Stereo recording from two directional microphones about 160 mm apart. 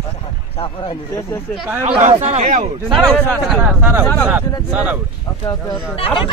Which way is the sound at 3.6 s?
10° right (ahead or behind).